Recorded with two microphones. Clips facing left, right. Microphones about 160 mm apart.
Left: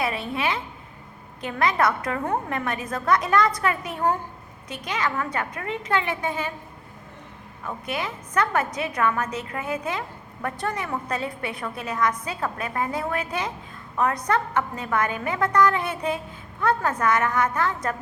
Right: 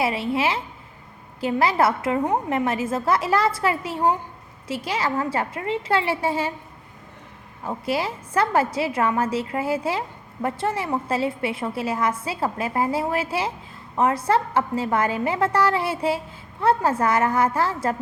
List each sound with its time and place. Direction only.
0.0 s a woman's voice: 30° right (ahead or behind)
7.6 s a woman's voice: 30° right (ahead or behind)